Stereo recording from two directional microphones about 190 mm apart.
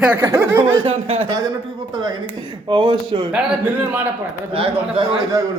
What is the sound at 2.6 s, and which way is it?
Speech, 25° right (ahead or behind).